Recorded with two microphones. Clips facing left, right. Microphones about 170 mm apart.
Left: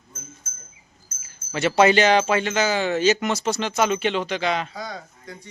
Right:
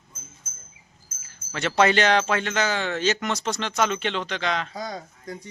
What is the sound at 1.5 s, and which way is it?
Speech, 10° left (ahead or behind).